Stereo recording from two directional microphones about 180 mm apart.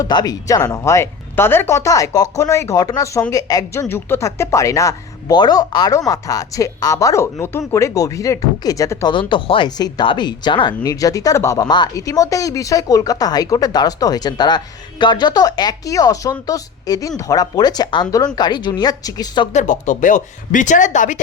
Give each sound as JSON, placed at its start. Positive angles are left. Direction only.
{"t": 0.0, "sound": "a woman's voice", "side_deg": 20}
{"t": 9.1, "sound": "speech", "side_deg": 25}
{"t": 19.5, "sound": "speech", "side_deg": 45}